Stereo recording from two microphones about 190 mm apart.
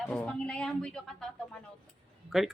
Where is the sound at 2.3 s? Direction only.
Centre (ahead or behind).